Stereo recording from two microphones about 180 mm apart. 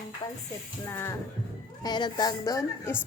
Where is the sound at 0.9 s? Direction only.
15° left (ahead or behind).